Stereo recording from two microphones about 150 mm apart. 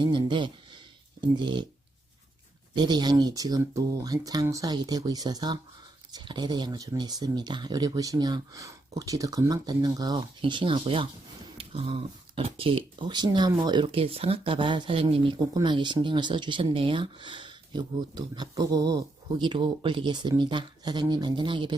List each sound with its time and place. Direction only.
0.0 s speech: 30° right (ahead or behind)
2.7 s speech: 30° right (ahead or behind)
11.5 s a sound: 35° right (ahead or behind)
12.4 s speech: 40° right (ahead or behind)